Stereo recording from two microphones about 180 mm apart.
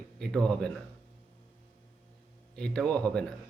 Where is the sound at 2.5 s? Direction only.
5° left (ahead or behind).